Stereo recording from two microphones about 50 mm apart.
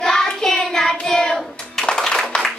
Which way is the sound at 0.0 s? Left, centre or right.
Centre.